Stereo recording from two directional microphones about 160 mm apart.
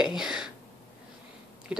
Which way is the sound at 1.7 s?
5° right (ahead or behind).